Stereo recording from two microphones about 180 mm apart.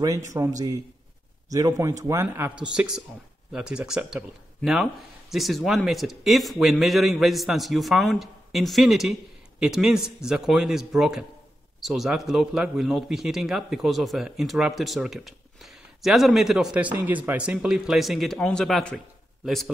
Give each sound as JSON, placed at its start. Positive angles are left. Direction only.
{"t": 0.3, "sound": "a man's voice", "side_deg": -15}